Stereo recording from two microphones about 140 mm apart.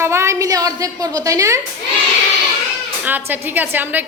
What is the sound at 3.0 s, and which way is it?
A woman's voice, 15° right (ahead or behind).